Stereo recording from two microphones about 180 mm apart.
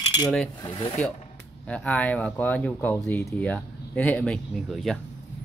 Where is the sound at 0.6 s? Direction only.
30° left (ahead or behind).